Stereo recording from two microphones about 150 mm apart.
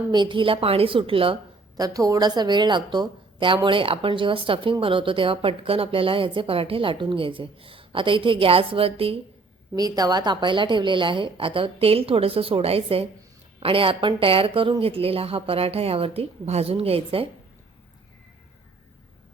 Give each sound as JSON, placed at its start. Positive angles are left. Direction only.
{"t": 0.1, "sound": "a woman's voice", "side_deg": -30}
{"t": 1.7, "sound": "a woman's voice", "side_deg": -25}
{"t": 9.7, "sound": "a woman's voice", "side_deg": -25}